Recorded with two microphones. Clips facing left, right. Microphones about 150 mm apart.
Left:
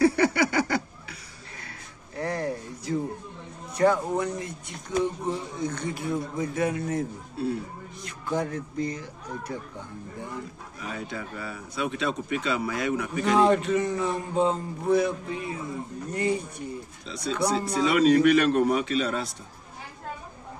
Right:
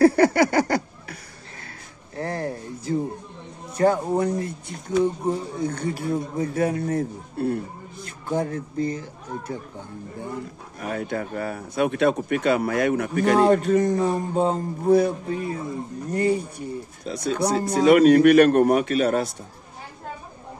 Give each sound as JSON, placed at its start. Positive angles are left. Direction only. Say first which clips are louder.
{"t": 0.0, "sound": "a sound", "louder": "right 5 dB", "side_deg": -45}
{"t": 2.1, "sound": "a sound", "louder": "right 1 dB", "side_deg": -30}
{"t": 3.7, "sound": "speech", "louder": "right 2 dB", "side_deg": -35}
{"t": 7.3, "sound": "speech", "louder": "right 4 dB", "side_deg": -55}
{"t": 8.3, "sound": "speech", "louder": "right 3 dB", "side_deg": -30}
{"t": 10.8, "sound": "speech", "louder": "right 7 dB", "side_deg": -55}
{"t": 17.0, "sound": "speech", "louder": "right 3 dB", "side_deg": -45}